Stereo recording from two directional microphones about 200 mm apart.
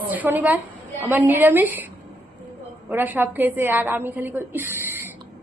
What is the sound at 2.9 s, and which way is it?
A woman's voice, 10° right (ahead or behind).